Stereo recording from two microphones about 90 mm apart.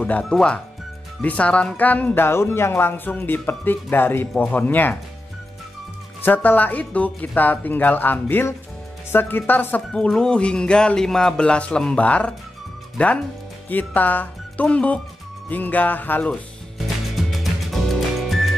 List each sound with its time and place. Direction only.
0.2 s speech: 10° left (ahead or behind)
6.2 s speech: 20° left (ahead or behind)
9.9 s speech: 10° left (ahead or behind)
16.7 s music: centre (ahead or behind)